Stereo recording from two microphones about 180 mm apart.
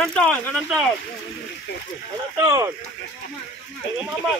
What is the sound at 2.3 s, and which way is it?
Speech, 15° right (ahead or behind).